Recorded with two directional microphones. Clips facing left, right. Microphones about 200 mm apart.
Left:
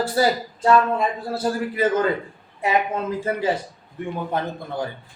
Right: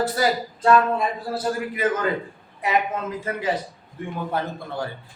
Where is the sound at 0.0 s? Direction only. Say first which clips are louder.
Left 2 dB; 30° left (ahead or behind).